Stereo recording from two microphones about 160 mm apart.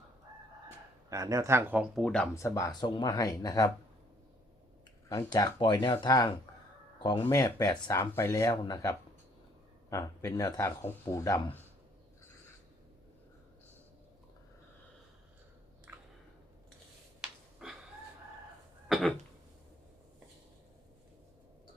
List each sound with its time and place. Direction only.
1.1 s speech: 20° right (ahead or behind)
2.0 s speech: 5° left (ahead or behind)
2.3 s speech: 20° left (ahead or behind)
5.0 s speech: 25° left (ahead or behind)
17.2 s a sound: 5° right (ahead or behind)
18.9 s cough: centre (ahead or behind)